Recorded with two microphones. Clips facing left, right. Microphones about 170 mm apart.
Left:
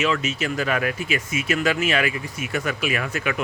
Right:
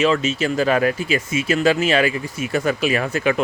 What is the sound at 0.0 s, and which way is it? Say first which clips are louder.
Speech: right 5 dB; 30° right (ahead or behind).